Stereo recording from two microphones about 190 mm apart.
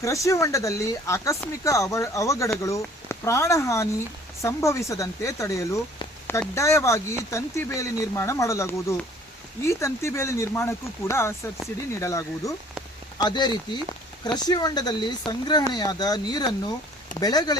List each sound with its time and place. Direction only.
0.0 s speech: 15° left (ahead or behind)